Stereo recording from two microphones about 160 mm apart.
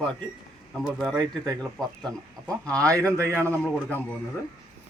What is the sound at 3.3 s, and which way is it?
Speech, 10° left (ahead or behind).